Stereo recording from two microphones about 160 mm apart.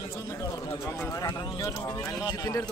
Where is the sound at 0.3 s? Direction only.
20° left (ahead or behind).